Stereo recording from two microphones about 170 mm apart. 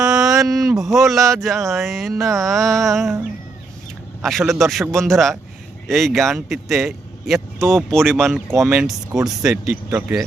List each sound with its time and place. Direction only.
0.2 s a sound: centre (ahead or behind)
1.0 s speech: centre (ahead or behind)
4.2 s speech: centre (ahead or behind)
4.9 s speech: 15° right (ahead or behind)
5.1 s speech: centre (ahead or behind)